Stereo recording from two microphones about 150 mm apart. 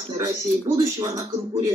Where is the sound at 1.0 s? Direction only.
20° right (ahead or behind).